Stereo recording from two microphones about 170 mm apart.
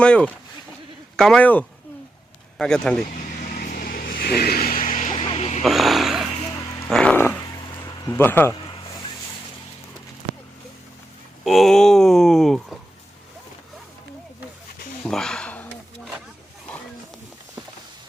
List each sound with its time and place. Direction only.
0.0 s music: 5° left (ahead or behind)
1.1 s speech: 5° left (ahead or behind)
3.5 s vehicle: 55° left (ahead or behind)
5.1 s music: 35° left (ahead or behind)
5.6 s speech: centre (ahead or behind)
6.9 s music: 5° left (ahead or behind)
7.9 s speech: 15° left (ahead or behind)
11.4 s speech: centre (ahead or behind)
15.0 s a sound: 5° left (ahead or behind)